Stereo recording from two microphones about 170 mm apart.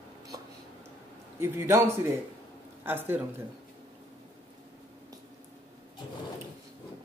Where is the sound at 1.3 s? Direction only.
15° right (ahead or behind).